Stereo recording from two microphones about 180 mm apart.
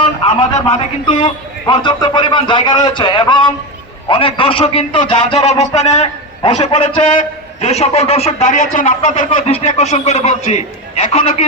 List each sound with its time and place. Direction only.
0.0 s a man's voice: 30° left (ahead or behind)
5.5 s a man's voice: 40° left (ahead or behind)